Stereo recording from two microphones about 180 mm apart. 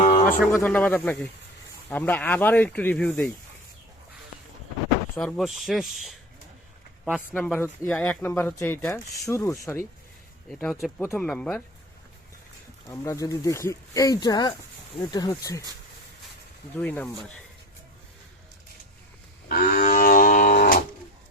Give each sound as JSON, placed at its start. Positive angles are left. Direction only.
{"t": 0.0, "sound": "a sound", "side_deg": 45}
{"t": 0.5, "sound": "speech", "side_deg": 10}
{"t": 5.1, "sound": "speech", "side_deg": 0}
{"t": 7.3, "sound": "speech", "side_deg": 10}
{"t": 10.6, "sound": "speech", "side_deg": 0}
{"t": 12.9, "sound": "speech", "side_deg": 20}
{"t": 16.7, "sound": "speech", "side_deg": 10}
{"t": 19.5, "sound": "livestock", "side_deg": 50}